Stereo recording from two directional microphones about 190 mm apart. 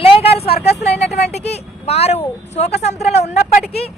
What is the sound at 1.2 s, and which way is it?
A woman's voice, 35° left (ahead or behind).